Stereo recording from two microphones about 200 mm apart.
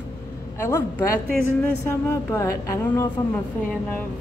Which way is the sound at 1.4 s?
10° left (ahead or behind).